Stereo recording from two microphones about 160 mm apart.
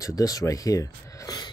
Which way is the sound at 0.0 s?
20° left (ahead or behind).